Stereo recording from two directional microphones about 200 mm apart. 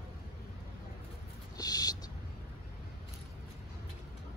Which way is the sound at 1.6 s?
20° left (ahead or behind).